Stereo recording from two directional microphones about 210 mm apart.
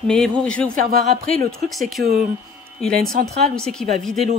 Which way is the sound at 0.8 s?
40° right (ahead or behind).